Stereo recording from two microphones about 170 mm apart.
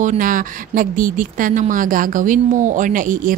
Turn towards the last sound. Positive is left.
turn(degrees=-55)  # may be behind; listen again after turning